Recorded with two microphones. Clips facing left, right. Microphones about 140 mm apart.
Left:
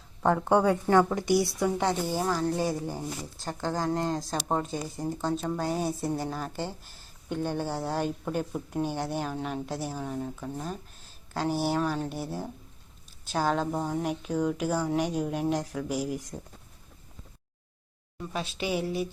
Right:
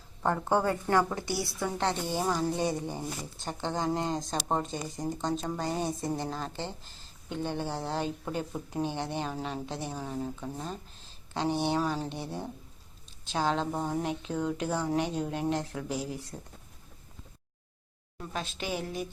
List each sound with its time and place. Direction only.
0.5 s speech: centre (ahead or behind)
0.9 s a woman's voice: 15° left (ahead or behind)
2.2 s a woman's voice: 5° right (ahead or behind)
14.0 s a woman's voice: 10° left (ahead or behind)
18.2 s a woman's voice: 5° left (ahead or behind)